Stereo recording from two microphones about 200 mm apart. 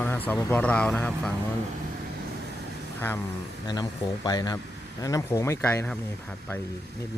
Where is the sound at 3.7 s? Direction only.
20° left (ahead or behind); by 6.6 s 5° left (ahead or behind).